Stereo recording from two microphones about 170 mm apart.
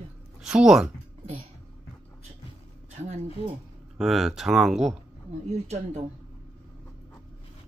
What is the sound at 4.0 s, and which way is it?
Speech, centre (ahead or behind).